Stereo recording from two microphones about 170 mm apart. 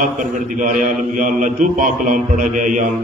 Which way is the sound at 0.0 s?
50° right (ahead or behind).